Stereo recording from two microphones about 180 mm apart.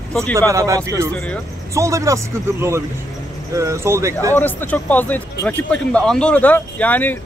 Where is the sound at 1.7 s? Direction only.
15° right (ahead or behind).